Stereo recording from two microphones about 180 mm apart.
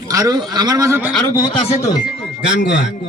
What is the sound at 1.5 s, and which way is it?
Speech, 35° left (ahead or behind).